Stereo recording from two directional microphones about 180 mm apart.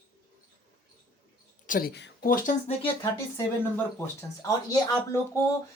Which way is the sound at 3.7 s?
15° left (ahead or behind).